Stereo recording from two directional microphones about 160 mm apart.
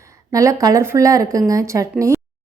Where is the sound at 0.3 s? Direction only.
20° right (ahead or behind).